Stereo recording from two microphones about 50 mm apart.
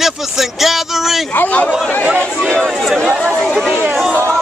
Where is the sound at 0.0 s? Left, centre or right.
Centre.